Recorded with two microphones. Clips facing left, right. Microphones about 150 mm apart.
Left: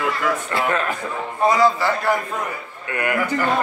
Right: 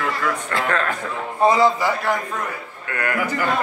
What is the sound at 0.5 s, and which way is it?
Speech, 10° left (ahead or behind).